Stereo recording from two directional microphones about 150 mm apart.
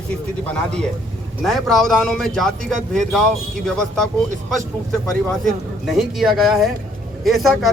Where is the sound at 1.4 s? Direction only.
Centre (ahead or behind).